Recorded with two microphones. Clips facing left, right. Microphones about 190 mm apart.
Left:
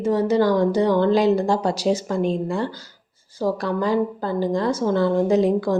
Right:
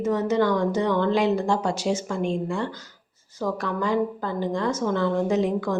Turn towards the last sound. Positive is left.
turn(degrees=35)  # may be behind; listen again after turning